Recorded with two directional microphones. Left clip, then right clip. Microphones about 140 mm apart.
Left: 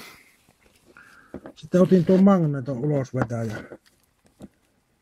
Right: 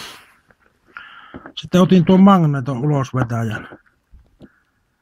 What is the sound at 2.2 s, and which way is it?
Speech, 25° right (ahead or behind).